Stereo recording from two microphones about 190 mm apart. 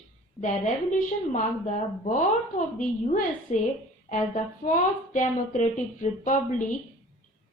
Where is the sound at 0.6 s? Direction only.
40° left (ahead or behind).